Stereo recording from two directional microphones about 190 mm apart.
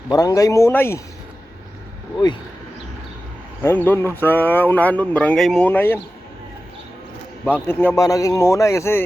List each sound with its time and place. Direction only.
0.1 s speech: 20° left (ahead or behind)
3.6 s speech: 10° left (ahead or behind)
7.4 s speech: 10° left (ahead or behind)